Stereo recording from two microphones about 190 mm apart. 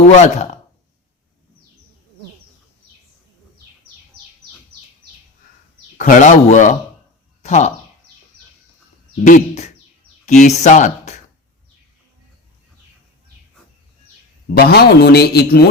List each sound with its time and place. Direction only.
0.1 s speech: 35° left (ahead or behind)
6.0 s speech: 40° left (ahead or behind)
9.2 s speech: 40° left (ahead or behind)
14.5 s a man's voice: 55° left (ahead or behind)